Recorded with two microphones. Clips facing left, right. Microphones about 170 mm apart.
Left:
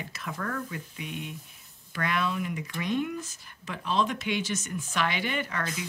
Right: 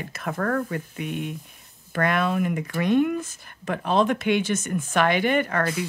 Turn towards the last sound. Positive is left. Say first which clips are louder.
# right 9 dB
turn(degrees=-55)  # may be behind; listen again after turning